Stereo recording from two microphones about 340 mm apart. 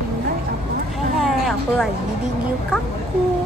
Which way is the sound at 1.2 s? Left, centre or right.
Centre.